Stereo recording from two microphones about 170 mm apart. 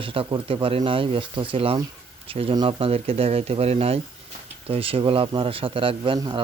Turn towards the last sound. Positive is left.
turn(degrees=-25)  # may be behind; listen again after turning